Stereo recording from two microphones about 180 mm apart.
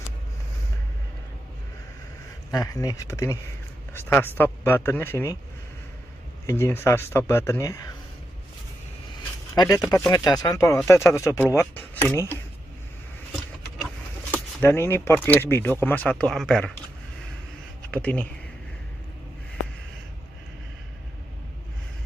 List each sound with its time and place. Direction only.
2.5 s speech: 20° left (ahead or behind)
6.4 s speech: 15° left (ahead or behind)
9.8 s speech: 15° left (ahead or behind)
14.3 s speech: 10° left (ahead or behind)
17.9 s speech: 5° left (ahead or behind)